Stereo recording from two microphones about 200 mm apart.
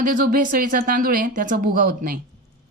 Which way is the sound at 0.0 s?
45° right (ahead or behind).